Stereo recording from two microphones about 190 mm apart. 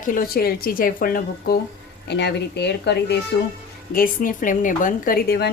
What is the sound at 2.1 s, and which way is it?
Speech, 60° left (ahead or behind).